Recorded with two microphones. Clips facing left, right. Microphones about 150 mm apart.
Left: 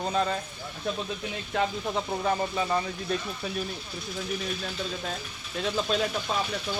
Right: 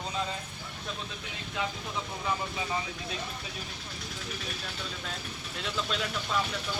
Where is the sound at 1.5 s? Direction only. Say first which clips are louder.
Left 7 dB; 65° left (ahead or behind).